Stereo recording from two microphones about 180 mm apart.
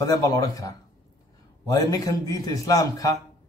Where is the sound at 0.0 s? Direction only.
20° left (ahead or behind).